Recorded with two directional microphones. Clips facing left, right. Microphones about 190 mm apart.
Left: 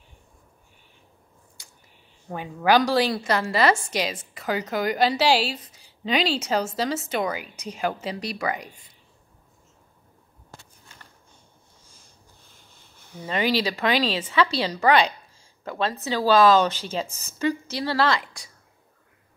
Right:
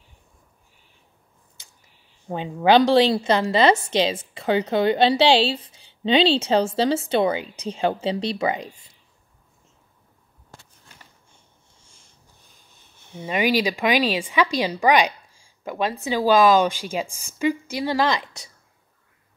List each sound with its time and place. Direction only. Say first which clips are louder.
2.2 s a woman's voice: right 4 dB; 25° right (ahead or behind)
12.7 s a woman's voice: right 3 dB; 20° right (ahead or behind)